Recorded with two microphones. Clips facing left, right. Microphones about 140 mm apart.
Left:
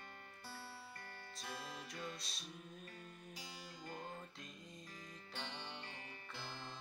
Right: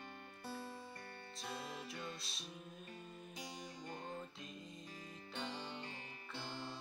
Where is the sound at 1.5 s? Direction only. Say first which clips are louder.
Right 3 dB; 25° right (ahead or behind).